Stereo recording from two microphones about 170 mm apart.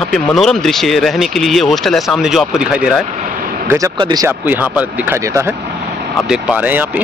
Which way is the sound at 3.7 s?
25° right (ahead or behind).